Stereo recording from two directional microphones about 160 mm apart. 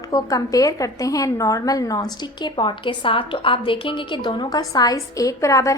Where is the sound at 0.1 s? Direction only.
20° left (ahead or behind).